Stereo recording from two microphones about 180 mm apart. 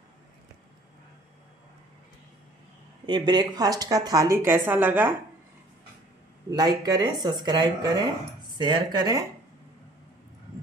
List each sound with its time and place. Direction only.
3.1 s speech: 25° right (ahead or behind)
6.5 s speech: 20° right (ahead or behind)